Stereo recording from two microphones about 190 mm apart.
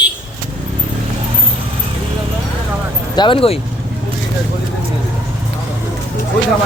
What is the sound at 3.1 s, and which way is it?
Speech, 25° left (ahead or behind).